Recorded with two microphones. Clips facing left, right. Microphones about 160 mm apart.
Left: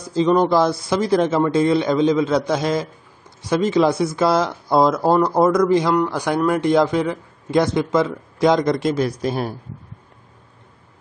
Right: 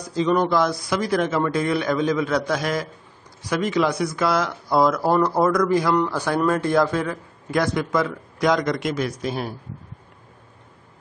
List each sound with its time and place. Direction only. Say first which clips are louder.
0.0 s a man's voice: left 4 dB; 30° left (ahead or behind)